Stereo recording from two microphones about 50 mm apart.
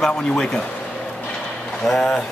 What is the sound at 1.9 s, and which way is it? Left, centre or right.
Speech, centre.